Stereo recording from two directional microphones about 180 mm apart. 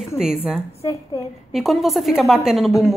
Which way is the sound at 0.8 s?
15° left (ahead or behind).